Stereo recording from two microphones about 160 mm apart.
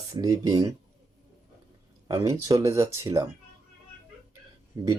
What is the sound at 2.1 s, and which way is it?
Speech, 20° right (ahead or behind).